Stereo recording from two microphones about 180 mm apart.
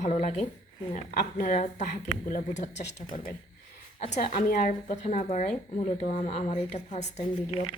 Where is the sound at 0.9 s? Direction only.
50° left (ahead or behind).